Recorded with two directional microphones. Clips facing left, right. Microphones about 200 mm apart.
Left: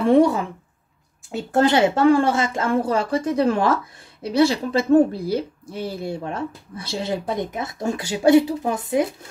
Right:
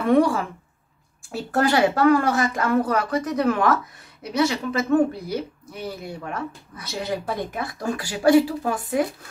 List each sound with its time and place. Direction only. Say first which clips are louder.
0.0 s speech: left 3 dB; 25° left (ahead or behind)